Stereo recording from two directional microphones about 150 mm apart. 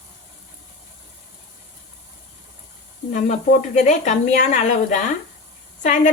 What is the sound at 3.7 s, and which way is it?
A woman's voice, 55° left (ahead or behind).